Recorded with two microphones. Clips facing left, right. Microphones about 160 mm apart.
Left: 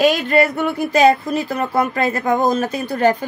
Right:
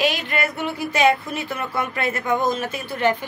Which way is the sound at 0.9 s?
40° left (ahead or behind).